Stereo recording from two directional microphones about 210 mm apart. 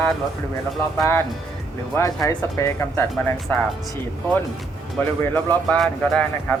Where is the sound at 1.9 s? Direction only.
15° left (ahead or behind).